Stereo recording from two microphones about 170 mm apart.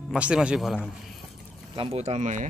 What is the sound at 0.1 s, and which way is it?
Speech, 5° right (ahead or behind).